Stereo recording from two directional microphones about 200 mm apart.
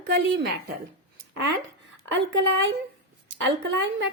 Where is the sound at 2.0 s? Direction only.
65° right (ahead or behind).